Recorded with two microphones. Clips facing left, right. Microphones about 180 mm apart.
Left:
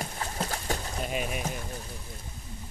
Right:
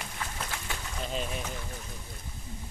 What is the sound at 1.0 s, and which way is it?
Speech, 10° left (ahead or behind).